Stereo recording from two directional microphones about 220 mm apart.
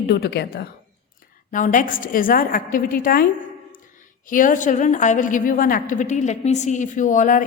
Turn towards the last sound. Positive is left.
turn(degrees=35)  # may be behind; listen again after turning